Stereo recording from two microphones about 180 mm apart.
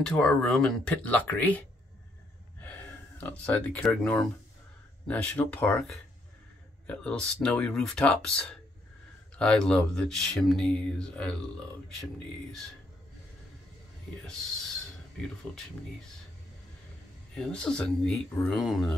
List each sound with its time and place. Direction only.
0.0 s speech: 5° left (ahead or behind)
2.6 s speech: 10° left (ahead or behind)
14.2 s speech: 5° left (ahead or behind)
17.3 s speech: 5° left (ahead or behind)